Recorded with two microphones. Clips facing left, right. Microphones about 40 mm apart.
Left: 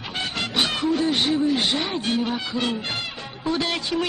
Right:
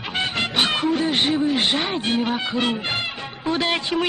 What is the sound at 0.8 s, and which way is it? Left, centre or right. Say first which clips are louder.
Honk: right 1 dB; right.